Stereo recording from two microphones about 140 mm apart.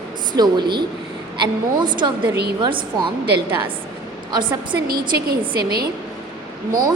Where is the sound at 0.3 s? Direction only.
30° right (ahead or behind).